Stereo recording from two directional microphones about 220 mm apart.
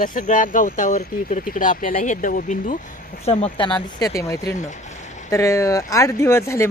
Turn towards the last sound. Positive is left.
turn(degrees=10)  # may be behind; listen again after turning